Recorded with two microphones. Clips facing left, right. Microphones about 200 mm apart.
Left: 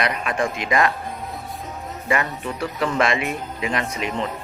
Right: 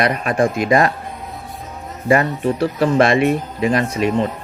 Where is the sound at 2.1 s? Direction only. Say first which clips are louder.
Right 8 dB; 35° right (ahead or behind).